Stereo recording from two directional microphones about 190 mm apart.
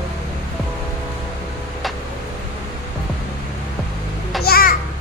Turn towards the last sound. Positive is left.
turn(degrees=50)  # may be behind; listen again after turning